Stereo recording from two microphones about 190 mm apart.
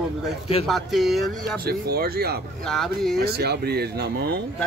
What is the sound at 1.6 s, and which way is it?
Speech, 55° right (ahead or behind).